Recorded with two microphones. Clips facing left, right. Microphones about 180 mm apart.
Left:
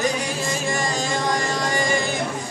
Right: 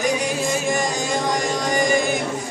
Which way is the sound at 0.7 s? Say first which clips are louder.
Right 2 dB; 15° right (ahead or behind).